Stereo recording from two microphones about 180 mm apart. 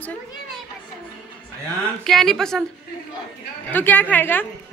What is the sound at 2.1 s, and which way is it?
Speech, centre (ahead or behind).